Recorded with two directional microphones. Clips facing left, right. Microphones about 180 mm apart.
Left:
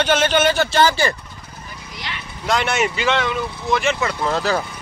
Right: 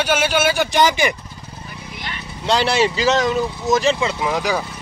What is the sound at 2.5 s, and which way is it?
Speech, 30° right (ahead or behind).